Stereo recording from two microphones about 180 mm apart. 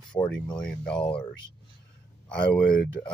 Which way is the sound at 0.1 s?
5° left (ahead or behind).